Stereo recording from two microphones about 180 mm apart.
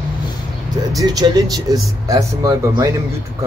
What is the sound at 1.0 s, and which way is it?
Speech, 20° right (ahead or behind).